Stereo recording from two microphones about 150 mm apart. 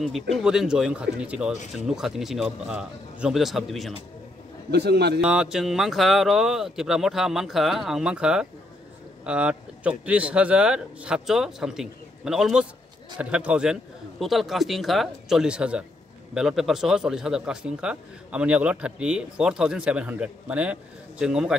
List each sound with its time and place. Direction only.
0.0 s a man's voice: centre (ahead or behind)
4.6 s a man's voice: 90° right
5.2 s a man's voice: 5° right (ahead or behind)